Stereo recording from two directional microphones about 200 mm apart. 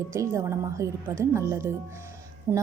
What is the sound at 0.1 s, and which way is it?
A woman's voice, 15° right (ahead or behind).